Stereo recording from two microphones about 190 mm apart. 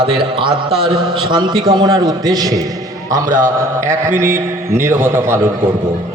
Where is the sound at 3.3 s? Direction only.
40° right (ahead or behind).